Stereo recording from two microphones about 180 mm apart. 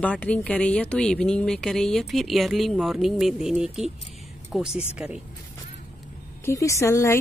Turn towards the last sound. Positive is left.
turn(degrees=15)  # may be behind; listen again after turning